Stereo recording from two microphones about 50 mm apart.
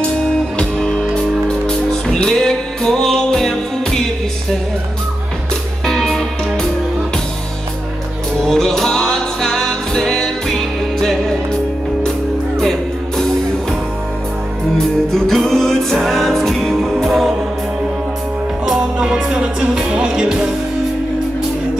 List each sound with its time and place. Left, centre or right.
0.6 s music: centre
5.9 s music: centre
8.4 s music: centre
14.8 s music: centre
18.7 s music: centre